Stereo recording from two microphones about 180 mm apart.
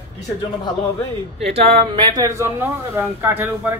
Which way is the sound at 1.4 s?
35° right (ahead or behind).